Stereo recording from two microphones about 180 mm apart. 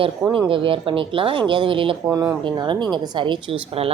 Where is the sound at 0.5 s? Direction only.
30° right (ahead or behind).